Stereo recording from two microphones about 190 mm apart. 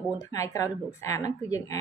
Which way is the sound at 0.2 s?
20° left (ahead or behind).